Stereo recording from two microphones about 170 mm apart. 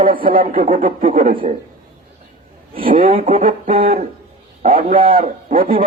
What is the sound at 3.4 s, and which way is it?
A man's voice, 55° right (ahead or behind).